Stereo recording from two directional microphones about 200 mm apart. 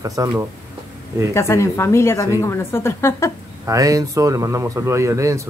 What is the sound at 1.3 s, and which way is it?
Speech, 15° left (ahead or behind).